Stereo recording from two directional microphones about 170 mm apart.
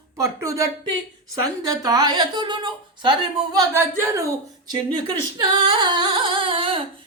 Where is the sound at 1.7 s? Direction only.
20° right (ahead or behind).